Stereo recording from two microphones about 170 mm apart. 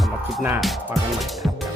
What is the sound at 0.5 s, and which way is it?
Speech, centre (ahead or behind).